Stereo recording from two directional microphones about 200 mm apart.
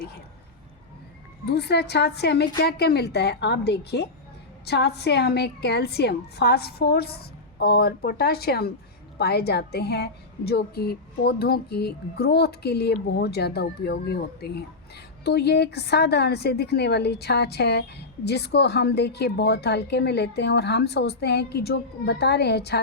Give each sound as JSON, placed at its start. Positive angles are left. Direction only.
{"t": 1.5, "sound": "a woman's voice", "side_deg": 55}